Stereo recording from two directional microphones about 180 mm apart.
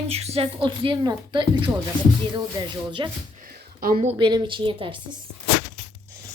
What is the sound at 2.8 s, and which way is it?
A woman's voice, 25° right (ahead or behind).